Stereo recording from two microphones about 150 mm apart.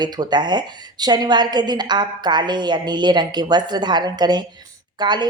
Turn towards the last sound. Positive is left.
turn(degrees=-30)  # may be behind; listen again after turning